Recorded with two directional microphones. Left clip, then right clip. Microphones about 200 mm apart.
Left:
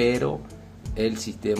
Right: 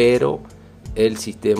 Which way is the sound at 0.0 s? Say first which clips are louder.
Right 7 dB; 35° right (ahead or behind).